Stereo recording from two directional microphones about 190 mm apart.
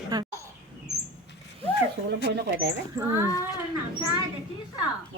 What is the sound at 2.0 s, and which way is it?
Speech, 60° right (ahead or behind).